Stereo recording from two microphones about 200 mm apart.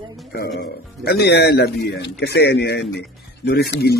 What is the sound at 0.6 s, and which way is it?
A man's voice, 55° left (ahead or behind).